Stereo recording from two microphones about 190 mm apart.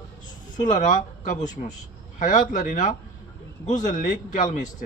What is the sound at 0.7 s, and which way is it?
A man's voice, 40° left (ahead or behind).